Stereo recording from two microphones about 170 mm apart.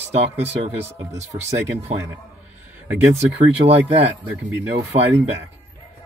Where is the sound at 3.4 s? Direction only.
35° right (ahead or behind).